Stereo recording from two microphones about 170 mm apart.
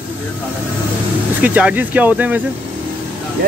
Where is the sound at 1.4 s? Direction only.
10° right (ahead or behind).